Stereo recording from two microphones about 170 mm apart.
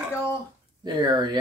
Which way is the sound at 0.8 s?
25° right (ahead or behind).